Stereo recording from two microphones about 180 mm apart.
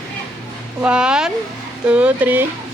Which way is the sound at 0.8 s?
5° right (ahead or behind).